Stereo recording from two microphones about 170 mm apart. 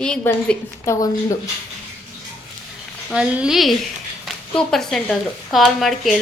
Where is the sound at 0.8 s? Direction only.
15° left (ahead or behind).